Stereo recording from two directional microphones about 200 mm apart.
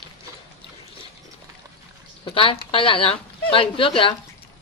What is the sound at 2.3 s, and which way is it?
A woman's voice, 25° left (ahead or behind).